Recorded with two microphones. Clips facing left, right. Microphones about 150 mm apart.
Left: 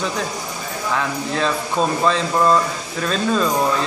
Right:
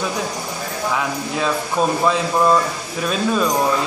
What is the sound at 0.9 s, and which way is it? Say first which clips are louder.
Speech: left 3 dB; 10° right (ahead or behind).